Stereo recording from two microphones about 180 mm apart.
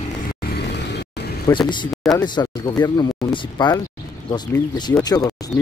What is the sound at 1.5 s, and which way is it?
Speech, 25° left (ahead or behind).